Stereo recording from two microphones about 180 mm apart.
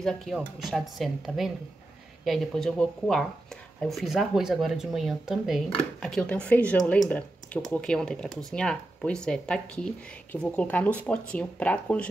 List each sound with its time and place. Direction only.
0.0 s speech: centre (ahead or behind)